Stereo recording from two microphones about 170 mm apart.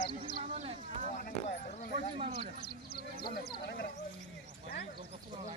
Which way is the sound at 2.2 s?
40° right (ahead or behind).